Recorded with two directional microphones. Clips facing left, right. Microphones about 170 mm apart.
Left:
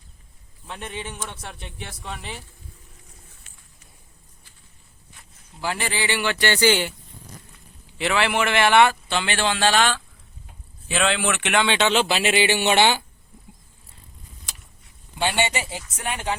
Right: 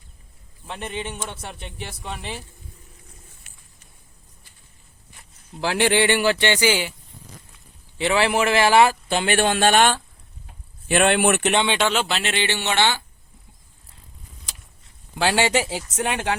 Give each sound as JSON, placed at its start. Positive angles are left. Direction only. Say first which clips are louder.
{"t": 0.7, "sound": "speech", "louder": "right 3 dB", "side_deg": 0}
{"t": 5.5, "sound": "a man's voice", "louder": "right 8 dB", "side_deg": -80}
{"t": 6.4, "sound": "speech", "louder": "left 1 dB", "side_deg": -15}
{"t": 7.9, "sound": "a man's voice", "louder": "right 2 dB", "side_deg": -30}
{"t": 11.7, "sound": "speech", "louder": "left 1 dB", "side_deg": 0}
{"t": 15.2, "sound": "speech", "louder": "right 4 dB", "side_deg": -90}